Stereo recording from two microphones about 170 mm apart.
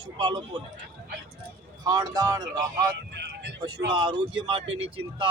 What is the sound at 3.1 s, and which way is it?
Vehicle, 85° right.